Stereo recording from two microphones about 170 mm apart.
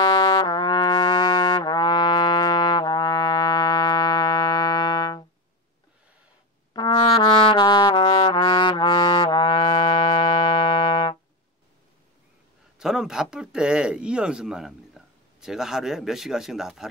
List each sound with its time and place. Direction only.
0.0 s trumpet: 25° left (ahead or behind)
6.7 s brass instrument: 30° left (ahead or behind)
12.7 s speech: 5° right (ahead or behind)